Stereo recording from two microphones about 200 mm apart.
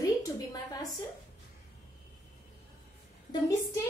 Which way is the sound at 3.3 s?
15° left (ahead or behind).